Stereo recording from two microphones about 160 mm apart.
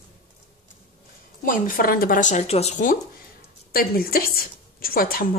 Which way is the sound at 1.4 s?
55° left (ahead or behind).